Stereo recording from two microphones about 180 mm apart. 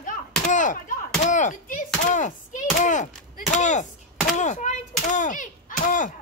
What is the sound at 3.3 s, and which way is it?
Chop, 45° left (ahead or behind).